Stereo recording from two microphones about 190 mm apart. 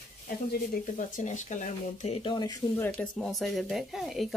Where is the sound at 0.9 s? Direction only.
40° left (ahead or behind); by 2.9 s 20° left (ahead or behind).